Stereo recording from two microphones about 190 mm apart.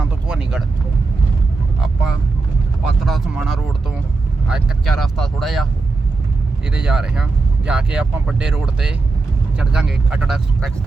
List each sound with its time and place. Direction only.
0.0 s vehicle: 5° right (ahead or behind)
1.8 s vehicle: 5° right (ahead or behind)
6.7 s speech: 5° right (ahead or behind)